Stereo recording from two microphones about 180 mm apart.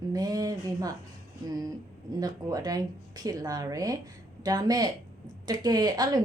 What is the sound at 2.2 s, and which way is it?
A woman's voice, 20° right (ahead or behind).